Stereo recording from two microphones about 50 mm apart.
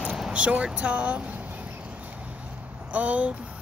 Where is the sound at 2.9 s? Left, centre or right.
Right.